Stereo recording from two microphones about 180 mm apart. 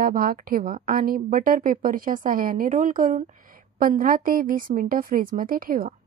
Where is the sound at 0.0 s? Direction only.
55° right (ahead or behind).